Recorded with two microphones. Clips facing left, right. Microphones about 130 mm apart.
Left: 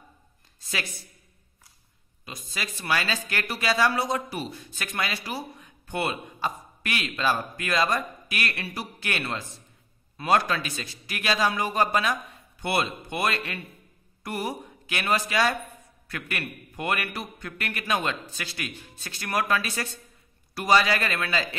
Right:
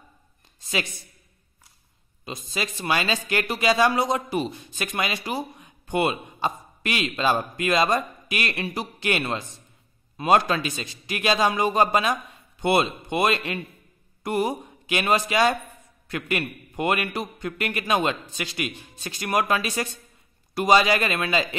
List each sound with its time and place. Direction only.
0.6 s a woman's voice: 20° right (ahead or behind)
2.2 s speech: 25° right (ahead or behind)